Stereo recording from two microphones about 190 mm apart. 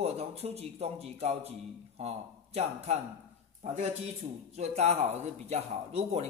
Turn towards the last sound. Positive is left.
turn(degrees=-35)  # may be behind; listen again after turning